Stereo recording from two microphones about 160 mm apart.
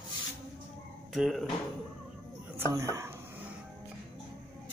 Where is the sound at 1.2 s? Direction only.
Centre (ahead or behind).